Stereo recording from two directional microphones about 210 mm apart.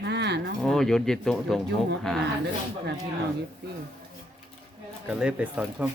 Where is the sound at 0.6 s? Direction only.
Centre (ahead or behind).